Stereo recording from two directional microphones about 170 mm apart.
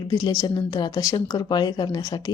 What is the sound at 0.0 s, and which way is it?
A woman's voice, 25° left (ahead or behind).